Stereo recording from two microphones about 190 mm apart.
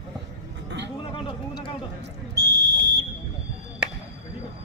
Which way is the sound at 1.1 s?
30° left (ahead or behind).